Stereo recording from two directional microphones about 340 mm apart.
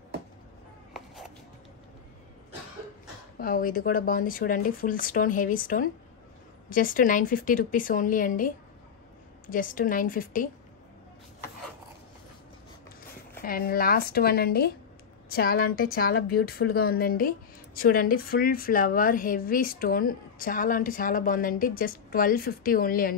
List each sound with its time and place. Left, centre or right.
3.3 s a woman's voice: left
13.4 s a woman's voice: left